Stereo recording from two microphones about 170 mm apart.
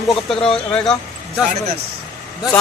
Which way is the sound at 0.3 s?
5° left (ahead or behind).